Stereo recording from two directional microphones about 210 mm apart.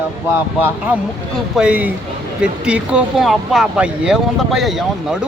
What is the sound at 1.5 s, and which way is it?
Speech, 5° right (ahead or behind).